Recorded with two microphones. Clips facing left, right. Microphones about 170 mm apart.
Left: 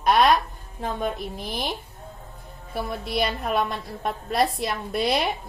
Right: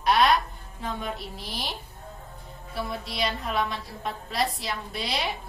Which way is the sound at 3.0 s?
55° left (ahead or behind).